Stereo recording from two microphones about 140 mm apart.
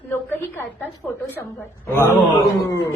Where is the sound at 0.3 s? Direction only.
15° left (ahead or behind).